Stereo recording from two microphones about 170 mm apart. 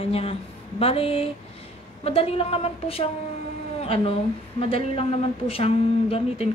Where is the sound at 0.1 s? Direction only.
35° left (ahead or behind).